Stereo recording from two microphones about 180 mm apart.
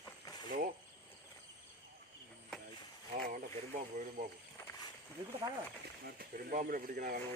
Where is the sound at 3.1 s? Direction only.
55° right (ahead or behind).